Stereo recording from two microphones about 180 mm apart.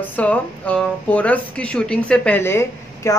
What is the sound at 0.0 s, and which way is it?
Speech, 10° left (ahead or behind).